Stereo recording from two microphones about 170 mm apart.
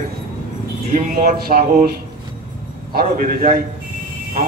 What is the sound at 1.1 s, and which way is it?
A man's voice, 60° right (ahead or behind).